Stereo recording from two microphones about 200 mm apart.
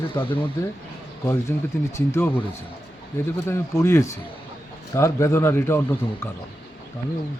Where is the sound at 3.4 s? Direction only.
15° left (ahead or behind).